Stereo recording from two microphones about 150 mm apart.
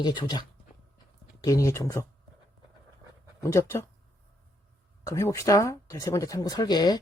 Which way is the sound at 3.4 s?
20° left (ahead or behind).